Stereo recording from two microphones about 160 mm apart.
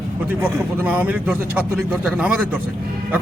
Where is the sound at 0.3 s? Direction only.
10° right (ahead or behind).